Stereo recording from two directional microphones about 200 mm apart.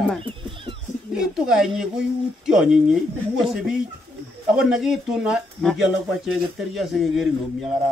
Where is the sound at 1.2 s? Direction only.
Centre (ahead or behind).